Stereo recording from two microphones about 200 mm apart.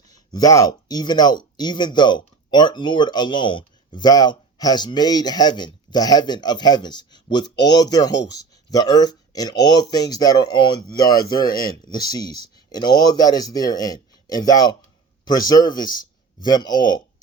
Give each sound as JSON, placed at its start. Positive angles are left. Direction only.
{"t": 0.1, "sound": "speech", "side_deg": 20}